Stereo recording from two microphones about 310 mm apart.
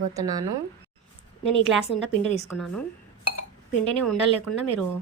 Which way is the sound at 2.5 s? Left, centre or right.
Centre.